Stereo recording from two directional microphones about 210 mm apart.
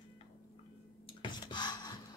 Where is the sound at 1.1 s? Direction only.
20° left (ahead or behind).